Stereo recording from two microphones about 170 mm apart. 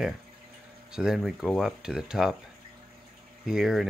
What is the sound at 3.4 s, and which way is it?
Speech, centre (ahead or behind).